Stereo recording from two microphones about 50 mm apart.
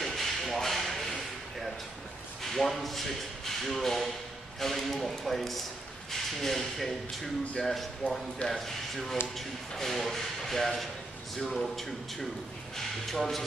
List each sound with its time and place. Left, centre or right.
0.0 s a sound: centre
2.4 s speech: centre
8.0 s speech: left
8.5 s speech: centre